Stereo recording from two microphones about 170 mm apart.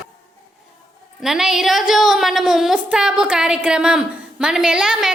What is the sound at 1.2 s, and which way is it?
A woman's voice, 5° right (ahead or behind).